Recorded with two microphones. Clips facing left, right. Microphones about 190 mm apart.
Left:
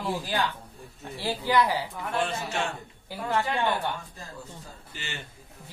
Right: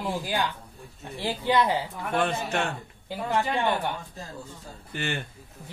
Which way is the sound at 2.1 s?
60° right (ahead or behind).